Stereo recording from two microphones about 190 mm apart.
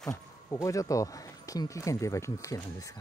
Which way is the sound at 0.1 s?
15° left (ahead or behind).